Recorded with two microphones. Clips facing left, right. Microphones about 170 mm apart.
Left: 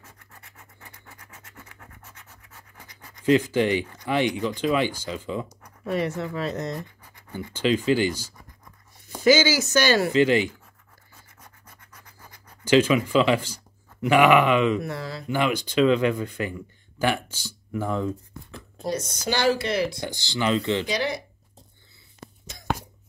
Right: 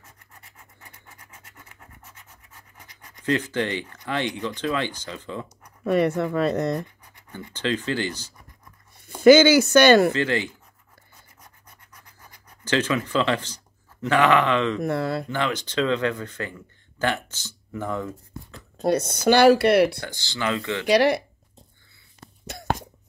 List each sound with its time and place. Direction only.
3.3 s speech: 15° left (ahead or behind)
5.9 s speech: 55° right (ahead or behind)
7.3 s speech: 10° left (ahead or behind)
9.2 s speech: 60° right (ahead or behind)
10.1 s speech: 15° left (ahead or behind)
12.6 s speech: 15° left (ahead or behind)
14.8 s speech: 55° right (ahead or behind)
15.2 s speech: 10° left (ahead or behind)
18.8 s speech: 60° right (ahead or behind)
20.0 s speech: 15° left (ahead or behind)
20.8 s speech: 65° right (ahead or behind)